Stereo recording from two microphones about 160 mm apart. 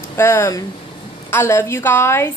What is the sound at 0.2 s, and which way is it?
A woman's voice, 15° left (ahead or behind).